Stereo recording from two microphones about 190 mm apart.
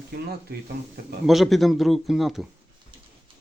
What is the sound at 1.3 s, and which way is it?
Speech, centre (ahead or behind).